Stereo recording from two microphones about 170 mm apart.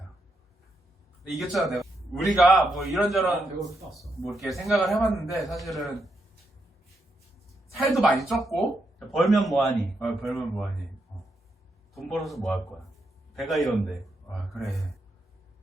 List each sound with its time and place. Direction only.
1.4 s a man's voice: centre (ahead or behind)
7.7 s a man's voice: centre (ahead or behind)
11.9 s a man's voice: centre (ahead or behind)